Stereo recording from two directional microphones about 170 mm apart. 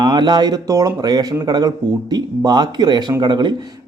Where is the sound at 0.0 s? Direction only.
25° right (ahead or behind).